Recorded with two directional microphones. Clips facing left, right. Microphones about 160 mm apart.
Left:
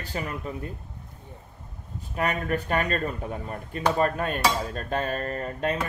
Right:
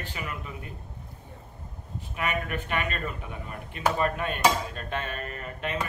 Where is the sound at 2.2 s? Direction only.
35° left (ahead or behind).